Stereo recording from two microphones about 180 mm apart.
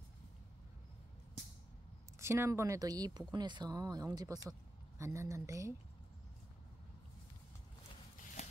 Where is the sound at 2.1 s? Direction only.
15° right (ahead or behind).